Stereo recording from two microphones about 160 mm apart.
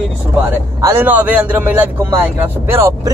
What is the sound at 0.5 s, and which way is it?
Speech, 15° right (ahead or behind).